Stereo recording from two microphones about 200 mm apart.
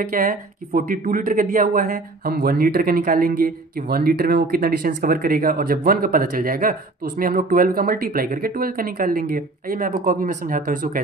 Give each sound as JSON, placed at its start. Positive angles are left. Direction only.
{"t": 0.1, "sound": "speech", "side_deg": -45}